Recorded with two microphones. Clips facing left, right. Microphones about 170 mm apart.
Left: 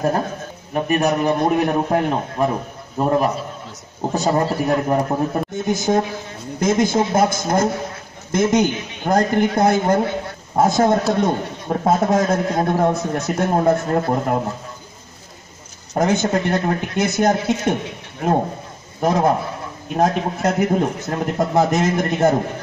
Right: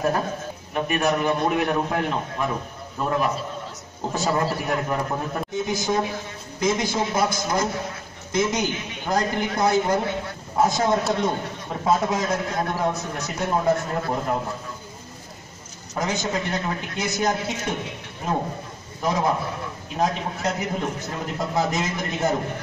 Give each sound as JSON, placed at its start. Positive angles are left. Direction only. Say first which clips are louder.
{"t": 0.7, "sound": "a man's voice", "louder": "left 4 dB", "side_deg": 40}
{"t": 15.9, "sound": "a man's voice", "louder": "left 8 dB", "side_deg": 50}
{"t": 18.9, "sound": "a man's voice", "louder": "left 6 dB", "side_deg": 50}